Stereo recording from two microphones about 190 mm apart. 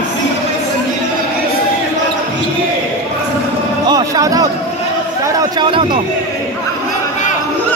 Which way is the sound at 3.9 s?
20° right (ahead or behind).